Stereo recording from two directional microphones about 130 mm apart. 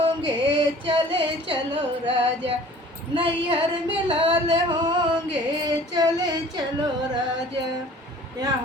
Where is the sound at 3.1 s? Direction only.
40° right (ahead or behind).